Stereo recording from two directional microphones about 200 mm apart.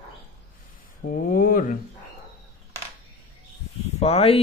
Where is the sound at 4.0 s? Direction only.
30° left (ahead or behind).